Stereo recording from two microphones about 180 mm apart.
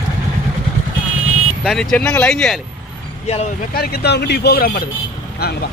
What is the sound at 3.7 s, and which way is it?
Speech, 60° left (ahead or behind).